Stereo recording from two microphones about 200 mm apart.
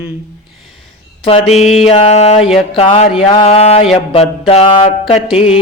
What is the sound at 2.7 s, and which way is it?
Mantra, 30° left (ahead or behind).